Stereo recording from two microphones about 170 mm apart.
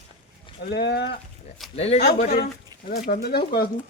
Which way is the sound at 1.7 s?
40° left (ahead or behind).